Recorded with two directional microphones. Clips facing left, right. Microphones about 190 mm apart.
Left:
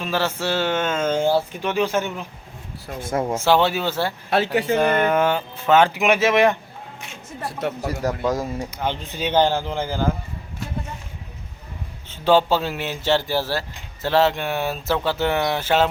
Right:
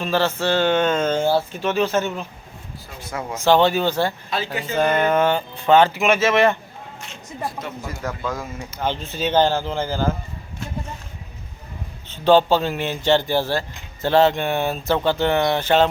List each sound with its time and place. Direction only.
0.0 s speech: 10° left (ahead or behind)
3.0 s speech: 50° left (ahead or behind)
3.3 s speech: 5° left (ahead or behind)
4.5 s speech: 70° left (ahead or behind)
4.9 s a sound: 5° right (ahead or behind)
5.1 s speech: 5° left (ahead or behind)
7.6 s speech: 70° left (ahead or behind)
8.3 s speech: 40° left (ahead or behind)
8.7 s speech: 15° left (ahead or behind)
12.1 s speech: 10° left (ahead or behind)